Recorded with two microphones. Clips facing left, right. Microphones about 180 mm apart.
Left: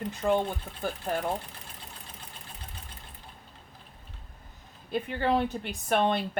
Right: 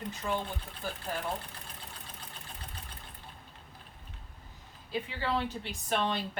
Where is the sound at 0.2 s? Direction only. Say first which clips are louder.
Left 9 dB; 50° left (ahead or behind).